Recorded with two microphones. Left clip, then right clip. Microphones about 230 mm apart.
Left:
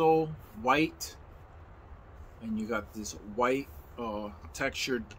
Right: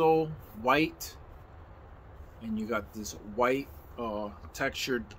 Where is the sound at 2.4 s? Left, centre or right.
Centre.